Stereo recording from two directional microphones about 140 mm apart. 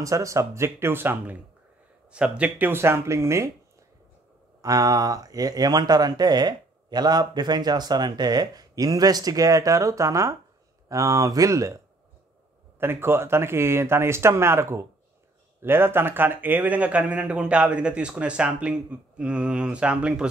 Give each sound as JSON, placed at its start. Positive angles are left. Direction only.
{"t": 0.0, "sound": "speech", "side_deg": -25}
{"t": 4.6, "sound": "speech", "side_deg": -25}